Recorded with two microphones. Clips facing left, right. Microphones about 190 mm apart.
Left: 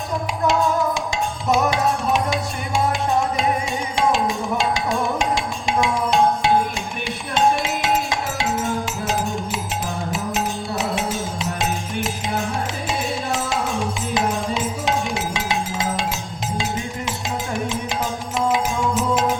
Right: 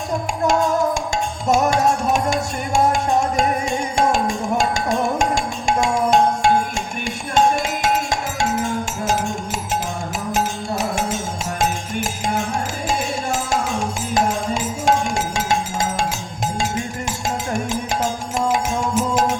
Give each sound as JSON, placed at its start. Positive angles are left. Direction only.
{"t": 0.4, "sound": "music", "side_deg": -45}
{"t": 10.3, "sound": "music", "side_deg": -45}